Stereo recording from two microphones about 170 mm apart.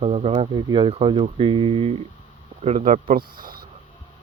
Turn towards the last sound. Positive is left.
turn(degrees=-60)  # may be behind; listen again after turning